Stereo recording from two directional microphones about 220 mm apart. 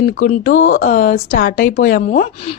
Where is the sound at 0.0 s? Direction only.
35° left (ahead or behind).